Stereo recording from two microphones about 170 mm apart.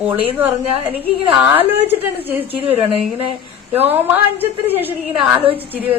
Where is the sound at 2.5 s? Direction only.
35° right (ahead or behind).